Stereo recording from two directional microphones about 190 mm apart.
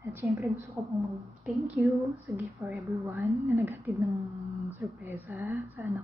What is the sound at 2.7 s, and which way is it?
Speech, centre (ahead or behind).